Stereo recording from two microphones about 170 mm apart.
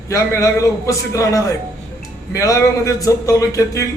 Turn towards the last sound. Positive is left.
turn(degrees=20)  # may be behind; listen again after turning